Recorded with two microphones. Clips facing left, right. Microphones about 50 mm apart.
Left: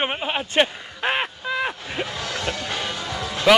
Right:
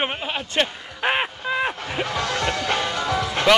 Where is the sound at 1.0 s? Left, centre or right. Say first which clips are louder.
Right 1 dB; centre.